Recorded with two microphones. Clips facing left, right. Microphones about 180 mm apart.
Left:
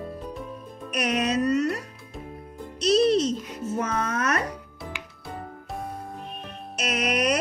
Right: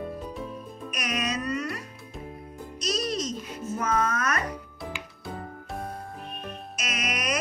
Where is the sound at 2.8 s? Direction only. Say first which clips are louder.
Left 10 dB; 65° left (ahead or behind).